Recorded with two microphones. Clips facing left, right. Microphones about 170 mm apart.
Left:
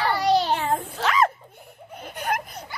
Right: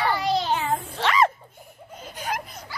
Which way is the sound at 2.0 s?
60° left (ahead or behind).